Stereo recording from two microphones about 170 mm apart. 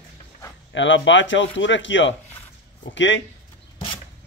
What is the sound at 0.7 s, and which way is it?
Speech, 90° left.